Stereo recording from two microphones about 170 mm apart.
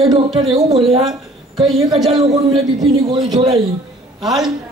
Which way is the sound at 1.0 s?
Centre (ahead or behind).